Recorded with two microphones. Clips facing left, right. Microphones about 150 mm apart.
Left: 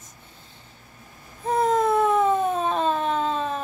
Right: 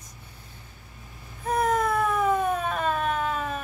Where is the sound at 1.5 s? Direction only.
25° left (ahead or behind).